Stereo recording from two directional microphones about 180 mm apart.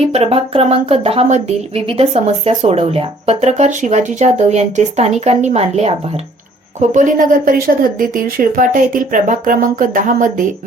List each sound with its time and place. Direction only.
0.1 s speech: 30° right (ahead or behind)